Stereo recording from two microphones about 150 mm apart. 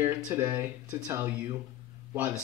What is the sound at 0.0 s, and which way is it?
Speech, 15° right (ahead or behind).